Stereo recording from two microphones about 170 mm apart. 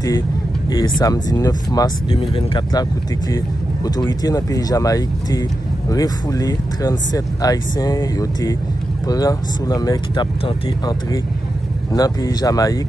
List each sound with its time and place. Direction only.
0.7 s speech: 25° left (ahead or behind)